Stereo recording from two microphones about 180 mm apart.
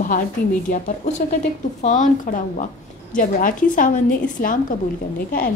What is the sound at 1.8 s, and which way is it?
Speech, 45° left (ahead or behind).